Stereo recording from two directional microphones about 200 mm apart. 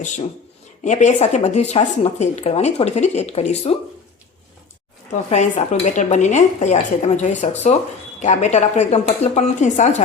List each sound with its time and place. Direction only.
0.0 s a woman's voice: 40° left (ahead or behind)
5.3 s a woman's voice: 35° left (ahead or behind)